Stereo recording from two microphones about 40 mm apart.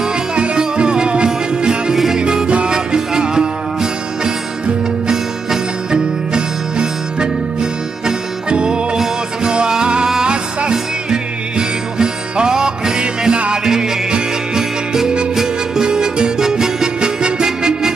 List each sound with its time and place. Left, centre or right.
0.0 s music: centre
8.5 s music: right